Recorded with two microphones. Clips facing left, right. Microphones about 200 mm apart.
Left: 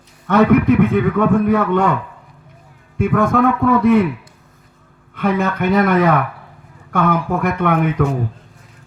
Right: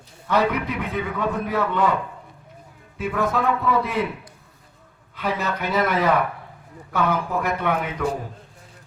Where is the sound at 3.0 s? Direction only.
50° left (ahead or behind).